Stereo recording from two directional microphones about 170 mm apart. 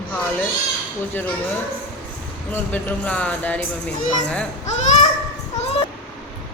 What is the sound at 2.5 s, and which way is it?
Speech, 10° left (ahead or behind).